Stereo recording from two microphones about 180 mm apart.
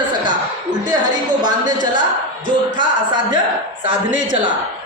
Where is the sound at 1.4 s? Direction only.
25° right (ahead or behind).